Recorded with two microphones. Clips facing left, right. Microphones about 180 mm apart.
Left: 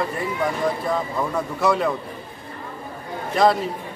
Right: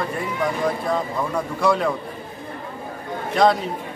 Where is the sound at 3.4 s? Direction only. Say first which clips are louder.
Even; centre (ahead or behind).